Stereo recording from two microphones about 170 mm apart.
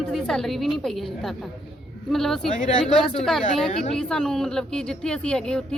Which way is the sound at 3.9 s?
5° left (ahead or behind).